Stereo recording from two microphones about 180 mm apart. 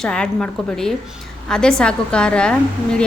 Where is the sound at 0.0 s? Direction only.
5° left (ahead or behind).